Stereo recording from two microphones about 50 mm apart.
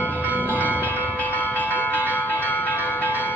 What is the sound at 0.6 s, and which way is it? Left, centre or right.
Change ringing, right.